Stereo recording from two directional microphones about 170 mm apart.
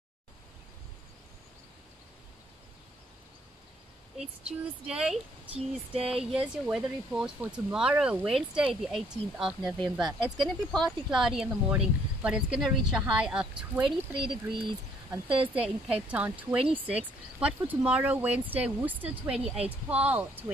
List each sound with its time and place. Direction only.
4.2 s speech: 5° right (ahead or behind)
13.8 s speech: 30° right (ahead or behind)
15.5 s speech: 5° right (ahead or behind)